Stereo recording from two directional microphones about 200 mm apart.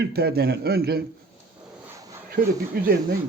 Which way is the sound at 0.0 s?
55° right (ahead or behind).